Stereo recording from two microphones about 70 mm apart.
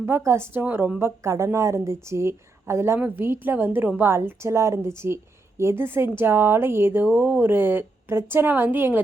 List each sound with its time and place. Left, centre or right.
0.0 s a woman's voice: right
0.9 s a woman's voice: right